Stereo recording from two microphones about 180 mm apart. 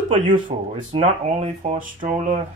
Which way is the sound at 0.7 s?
30° right (ahead or behind).